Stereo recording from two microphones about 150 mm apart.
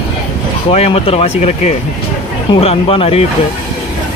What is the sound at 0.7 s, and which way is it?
Speech, 40° left (ahead or behind).